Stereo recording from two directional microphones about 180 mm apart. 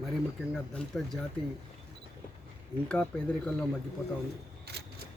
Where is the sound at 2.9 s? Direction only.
5° left (ahead or behind).